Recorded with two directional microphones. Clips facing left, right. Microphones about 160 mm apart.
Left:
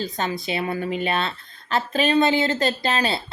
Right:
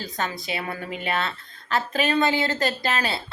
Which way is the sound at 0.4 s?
25° left (ahead or behind).